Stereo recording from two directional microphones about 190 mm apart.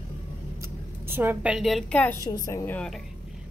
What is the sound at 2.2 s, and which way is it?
Speech, 15° left (ahead or behind).